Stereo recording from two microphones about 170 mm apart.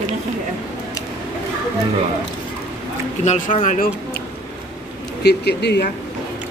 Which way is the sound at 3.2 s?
45° left (ahead or behind).